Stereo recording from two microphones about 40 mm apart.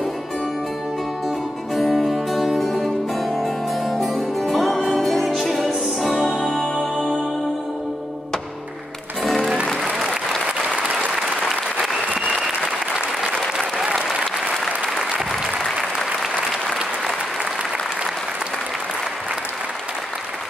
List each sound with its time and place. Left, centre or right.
1.8 s music: centre
7.0 s music: right